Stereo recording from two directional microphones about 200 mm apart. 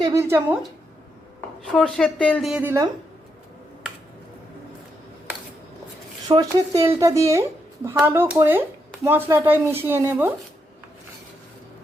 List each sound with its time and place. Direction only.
0.0 s speech: 15° right (ahead or behind)
1.6 s a woman's voice: 5° left (ahead or behind); by 2.9 s 15° right (ahead or behind)
6.2 s speech: 20° right (ahead or behind)